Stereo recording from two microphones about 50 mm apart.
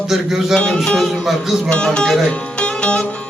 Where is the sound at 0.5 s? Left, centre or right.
Centre.